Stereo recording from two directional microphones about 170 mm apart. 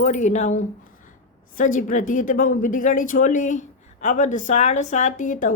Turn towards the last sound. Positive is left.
turn(degrees=50)  # may be behind; listen again after turning